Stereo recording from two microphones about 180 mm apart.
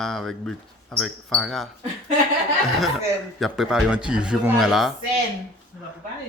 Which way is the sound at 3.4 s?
Centre (ahead or behind).